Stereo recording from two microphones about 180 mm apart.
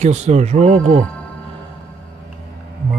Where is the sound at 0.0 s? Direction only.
40° right (ahead or behind).